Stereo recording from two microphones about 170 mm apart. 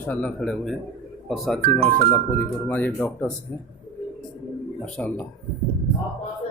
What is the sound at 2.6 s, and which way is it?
Speech, 10° left (ahead or behind).